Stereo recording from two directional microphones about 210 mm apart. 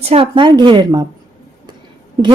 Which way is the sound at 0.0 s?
30° right (ahead or behind).